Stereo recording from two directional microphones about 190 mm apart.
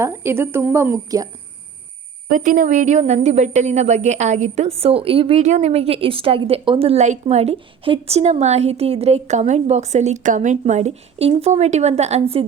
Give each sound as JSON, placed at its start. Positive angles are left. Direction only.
{"t": 0.0, "sound": "a woman's voice", "side_deg": -10}
{"t": 2.3, "sound": "a woman's voice", "side_deg": -45}